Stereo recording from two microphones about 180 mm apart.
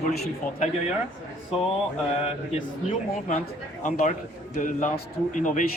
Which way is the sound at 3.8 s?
45° left (ahead or behind).